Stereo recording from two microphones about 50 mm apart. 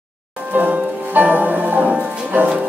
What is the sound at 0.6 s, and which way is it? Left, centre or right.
Music, right.